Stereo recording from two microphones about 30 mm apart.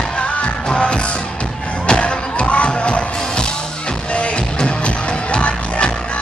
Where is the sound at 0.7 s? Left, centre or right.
Left.